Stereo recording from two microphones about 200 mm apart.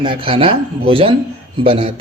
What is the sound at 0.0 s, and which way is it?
Speech, 25° right (ahead or behind).